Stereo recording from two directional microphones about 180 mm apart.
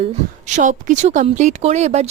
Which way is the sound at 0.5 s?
45° right (ahead or behind).